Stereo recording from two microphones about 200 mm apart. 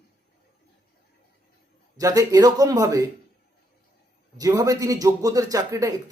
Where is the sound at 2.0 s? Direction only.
15° right (ahead or behind).